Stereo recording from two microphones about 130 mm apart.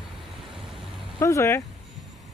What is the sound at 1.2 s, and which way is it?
Speech, 20° left (ahead or behind).